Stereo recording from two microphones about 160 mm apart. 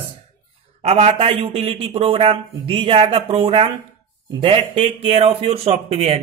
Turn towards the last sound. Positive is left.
turn(degrees=-40)  # may be behind; listen again after turning